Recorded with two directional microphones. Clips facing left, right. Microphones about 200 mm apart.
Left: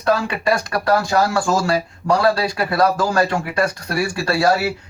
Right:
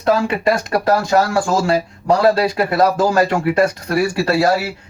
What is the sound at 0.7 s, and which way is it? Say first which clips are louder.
Speech: right 3 dB; 30° right (ahead or behind).